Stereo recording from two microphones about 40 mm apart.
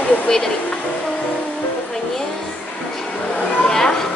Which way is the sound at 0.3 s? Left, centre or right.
Centre.